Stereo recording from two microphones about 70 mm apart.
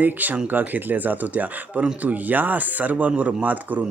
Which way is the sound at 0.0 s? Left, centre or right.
Right.